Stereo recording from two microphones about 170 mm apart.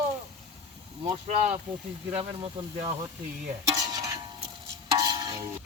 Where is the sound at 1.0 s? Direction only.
35° right (ahead or behind).